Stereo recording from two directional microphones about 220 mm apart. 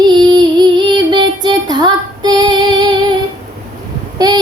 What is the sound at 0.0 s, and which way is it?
Child singing, 20° right (ahead or behind).